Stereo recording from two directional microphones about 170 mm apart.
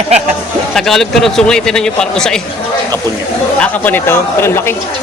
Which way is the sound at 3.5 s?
10° left (ahead or behind).